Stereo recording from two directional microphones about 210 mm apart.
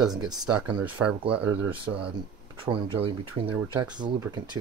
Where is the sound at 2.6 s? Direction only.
25° right (ahead or behind).